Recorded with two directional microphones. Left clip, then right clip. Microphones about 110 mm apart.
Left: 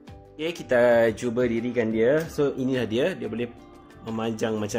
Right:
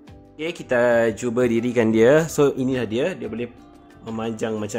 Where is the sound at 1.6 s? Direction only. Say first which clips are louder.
Right 9 dB; 70° right (ahead or behind).